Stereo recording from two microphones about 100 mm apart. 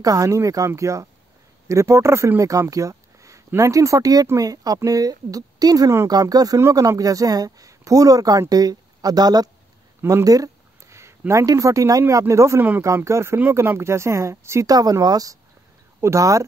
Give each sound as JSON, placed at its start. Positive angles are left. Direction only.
{"t": 0.0, "sound": "speech", "side_deg": -35}